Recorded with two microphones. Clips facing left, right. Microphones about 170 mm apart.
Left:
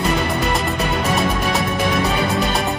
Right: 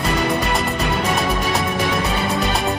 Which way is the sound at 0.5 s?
Centre (ahead or behind).